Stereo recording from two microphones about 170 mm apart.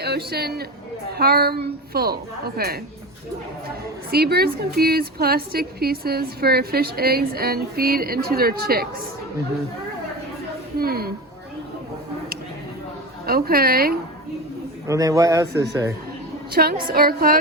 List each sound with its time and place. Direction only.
0.0 s a man's voice: 70° right (ahead or behind)
4.1 s a woman's voice: 65° right (ahead or behind)
10.8 s a woman's voice: 65° right (ahead or behind)
13.2 s a woman's voice: 60° right (ahead or behind)
14.8 s a man's voice: 20° right (ahead or behind)
16.5 s a woman's voice: 65° right (ahead or behind)